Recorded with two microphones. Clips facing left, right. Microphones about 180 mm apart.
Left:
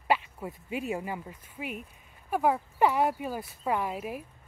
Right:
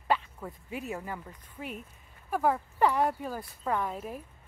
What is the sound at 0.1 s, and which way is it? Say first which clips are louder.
Speech: left 2 dB; 10° left (ahead or behind).